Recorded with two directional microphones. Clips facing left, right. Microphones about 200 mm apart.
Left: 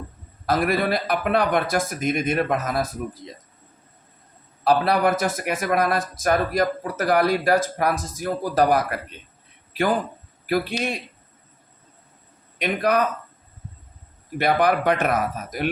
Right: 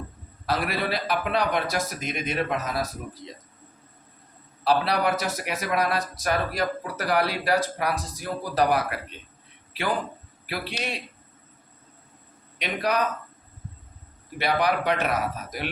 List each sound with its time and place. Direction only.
0.4 s a man's voice: 50° left (ahead or behind)
4.6 s a man's voice: 50° left (ahead or behind)
10.4 s a man's voice: 45° left (ahead or behind)
12.5 s a man's voice: 50° left (ahead or behind)
14.3 s a man's voice: 50° left (ahead or behind)